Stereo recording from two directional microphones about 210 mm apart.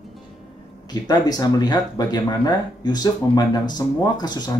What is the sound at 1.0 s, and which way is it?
Speech, 20° left (ahead or behind).